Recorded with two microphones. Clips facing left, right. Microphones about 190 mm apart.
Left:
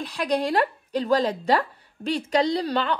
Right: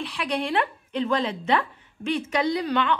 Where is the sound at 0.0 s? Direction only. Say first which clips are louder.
Left 3 dB; 40° left (ahead or behind).